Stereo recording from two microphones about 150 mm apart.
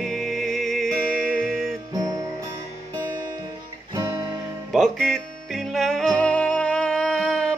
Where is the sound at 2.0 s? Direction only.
25° right (ahead or behind).